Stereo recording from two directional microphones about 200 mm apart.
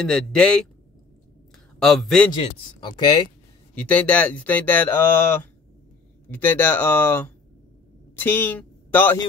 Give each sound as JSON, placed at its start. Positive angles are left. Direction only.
{"t": 0.0, "sound": "speech", "side_deg": 5}
{"t": 1.8, "sound": "speech", "side_deg": 0}
{"t": 2.3, "sound": "speech", "side_deg": 25}
{"t": 3.7, "sound": "speech", "side_deg": 5}